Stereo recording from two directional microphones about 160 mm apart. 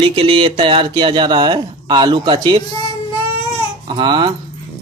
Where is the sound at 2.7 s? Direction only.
25° left (ahead or behind).